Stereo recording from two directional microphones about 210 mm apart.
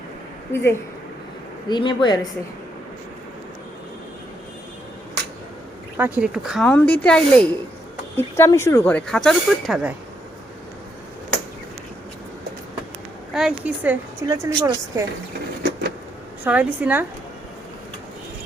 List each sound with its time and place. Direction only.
0.5 s speech: 10° left (ahead or behind)
6.0 s speech: 5° right (ahead or behind)
13.3 s a woman's voice: 5° right (ahead or behind)
16.4 s a woman's voice: 5° right (ahead or behind)